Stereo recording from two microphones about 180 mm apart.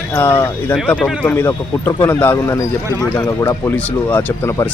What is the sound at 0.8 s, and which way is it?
Speech, centre (ahead or behind).